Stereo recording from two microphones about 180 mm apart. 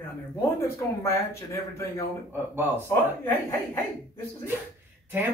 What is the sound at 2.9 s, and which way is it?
Speech, 10° left (ahead or behind).